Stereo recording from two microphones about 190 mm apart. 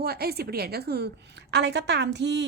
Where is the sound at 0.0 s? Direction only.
55° right (ahead or behind).